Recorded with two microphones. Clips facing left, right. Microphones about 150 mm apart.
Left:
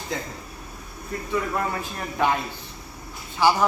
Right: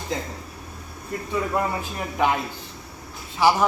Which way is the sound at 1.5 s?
15° right (ahead or behind).